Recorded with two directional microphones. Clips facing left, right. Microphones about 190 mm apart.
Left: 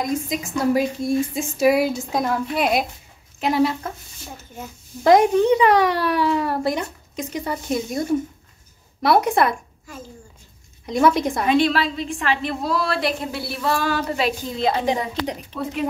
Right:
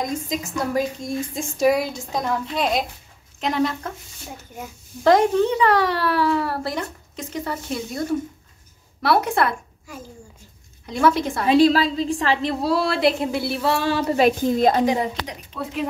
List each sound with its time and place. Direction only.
0.0 s a child's voice: 10° left (ahead or behind)
5.0 s a child's voice: 15° left (ahead or behind)
10.9 s a child's voice: 15° left (ahead or behind)
11.4 s a woman's voice: 35° right (ahead or behind)
14.1 s a woman's voice: 50° right (ahead or behind)
15.5 s speech: centre (ahead or behind)